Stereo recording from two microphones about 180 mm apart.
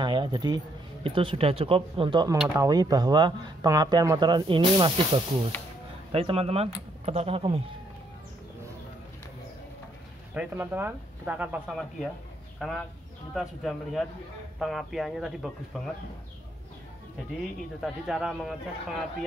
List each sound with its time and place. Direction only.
0.0 s a sound: 25° right (ahead or behind)
1.0 s speech: 30° right (ahead or behind)
2.3 s speech: 5° right (ahead or behind)
2.6 s speech: 20° right (ahead or behind)
10.3 s speech: 10° right (ahead or behind)
17.7 s speech: centre (ahead or behind)